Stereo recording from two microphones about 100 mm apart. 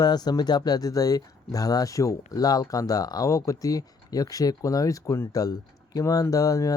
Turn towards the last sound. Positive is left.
turn(degrees=35)  # may be behind; listen again after turning